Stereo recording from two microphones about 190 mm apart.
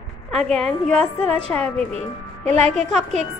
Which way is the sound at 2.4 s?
35° right (ahead or behind).